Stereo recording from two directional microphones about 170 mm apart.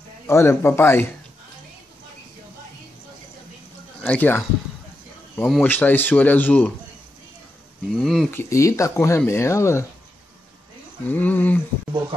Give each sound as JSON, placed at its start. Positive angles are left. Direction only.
{"t": 0.3, "sound": "speech", "side_deg": 15}
{"t": 4.0, "sound": "speech", "side_deg": 10}
{"t": 5.5, "sound": "speech", "side_deg": 10}
{"t": 7.9, "sound": "speech", "side_deg": 0}
{"t": 8.3, "sound": "speech", "side_deg": 15}
{"t": 11.1, "sound": "speech", "side_deg": 10}